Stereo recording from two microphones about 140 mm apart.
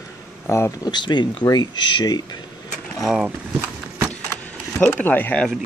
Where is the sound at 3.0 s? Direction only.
5° right (ahead or behind).